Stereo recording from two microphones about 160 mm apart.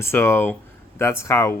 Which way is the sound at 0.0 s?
15° left (ahead or behind).